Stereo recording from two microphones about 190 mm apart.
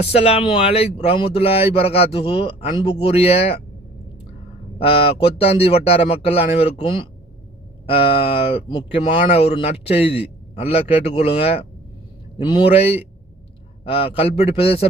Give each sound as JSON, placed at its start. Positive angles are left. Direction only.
{"t": 0.1, "sound": "speech", "side_deg": 35}
{"t": 4.8, "sound": "speech", "side_deg": 30}